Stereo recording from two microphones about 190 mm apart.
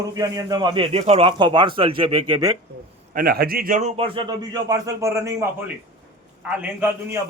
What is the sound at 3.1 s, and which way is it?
A man's voice, 50° right (ahead or behind).